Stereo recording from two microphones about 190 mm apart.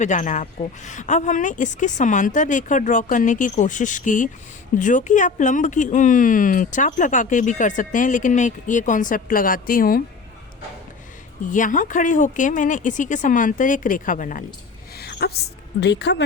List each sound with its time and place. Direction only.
0.0 s a woman's voice: 40° left (ahead or behind)
11.4 s speech: 45° left (ahead or behind)
14.9 s dog: 55° left (ahead or behind)
15.8 s speech: 60° left (ahead or behind)